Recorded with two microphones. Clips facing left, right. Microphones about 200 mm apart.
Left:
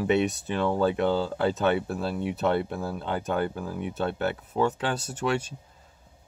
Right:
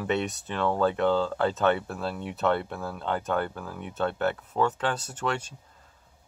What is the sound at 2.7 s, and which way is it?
Speech, 35° left (ahead or behind).